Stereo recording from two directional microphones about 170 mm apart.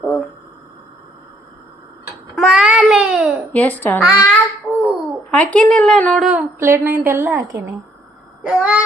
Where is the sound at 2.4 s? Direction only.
5° right (ahead or behind).